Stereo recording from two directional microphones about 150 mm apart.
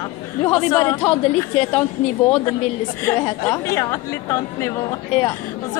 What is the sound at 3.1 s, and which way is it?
A woman's voice, 20° left (ahead or behind).